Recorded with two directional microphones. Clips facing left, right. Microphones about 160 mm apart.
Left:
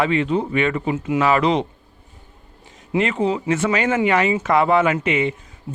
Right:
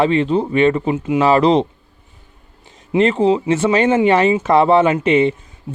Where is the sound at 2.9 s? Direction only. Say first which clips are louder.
Right 6 dB; 30° right (ahead or behind).